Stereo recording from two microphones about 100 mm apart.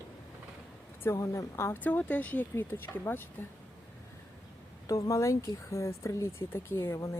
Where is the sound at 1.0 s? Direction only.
25° left (ahead or behind).